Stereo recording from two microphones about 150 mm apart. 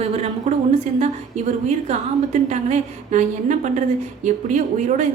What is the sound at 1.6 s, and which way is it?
A woman's voice, 50° right (ahead or behind).